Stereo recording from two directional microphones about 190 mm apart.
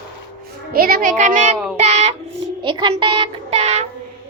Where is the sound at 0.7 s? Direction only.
50° right (ahead or behind).